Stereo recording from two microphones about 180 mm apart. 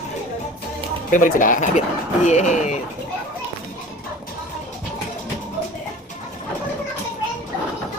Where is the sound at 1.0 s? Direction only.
45° left (ahead or behind).